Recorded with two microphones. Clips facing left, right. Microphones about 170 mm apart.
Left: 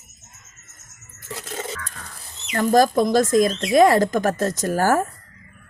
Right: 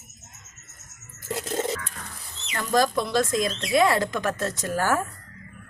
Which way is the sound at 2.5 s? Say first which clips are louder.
Left 6 dB; 45° left (ahead or behind).